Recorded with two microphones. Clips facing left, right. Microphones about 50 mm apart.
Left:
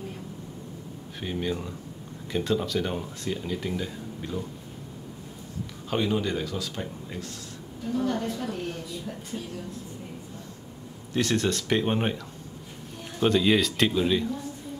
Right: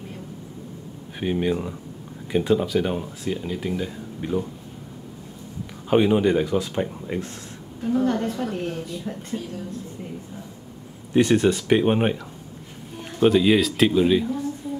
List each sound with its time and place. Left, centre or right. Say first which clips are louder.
1.2 s speech: right 7 dB; right
4.2 s speech: right 8 dB; right
5.9 s a woman's voice: right 9 dB; right
11.1 s speech: right 8 dB; centre
13.2 s speech: right 5 dB; centre